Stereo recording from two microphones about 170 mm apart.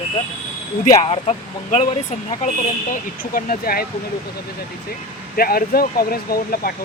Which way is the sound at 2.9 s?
55° left (ahead or behind).